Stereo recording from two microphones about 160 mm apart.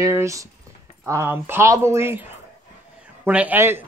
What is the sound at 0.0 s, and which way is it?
A woman's voice, 20° right (ahead or behind).